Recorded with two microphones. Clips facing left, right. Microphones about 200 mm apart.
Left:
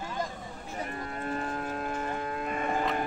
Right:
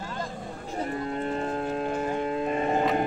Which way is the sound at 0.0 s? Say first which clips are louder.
Even; 15° left (ahead or behind).